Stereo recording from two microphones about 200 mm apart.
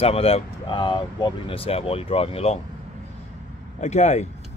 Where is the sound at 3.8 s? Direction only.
35° left (ahead or behind).